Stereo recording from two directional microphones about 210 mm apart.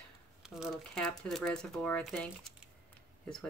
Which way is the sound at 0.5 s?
Centre (ahead or behind).